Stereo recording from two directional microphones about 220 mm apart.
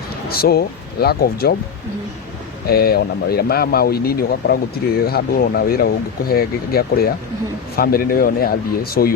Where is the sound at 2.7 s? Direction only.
45° left (ahead or behind).